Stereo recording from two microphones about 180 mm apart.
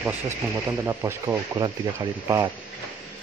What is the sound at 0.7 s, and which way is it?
Speech, 15° right (ahead or behind).